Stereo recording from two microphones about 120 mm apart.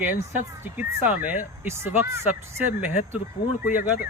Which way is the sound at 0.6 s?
15° right (ahead or behind).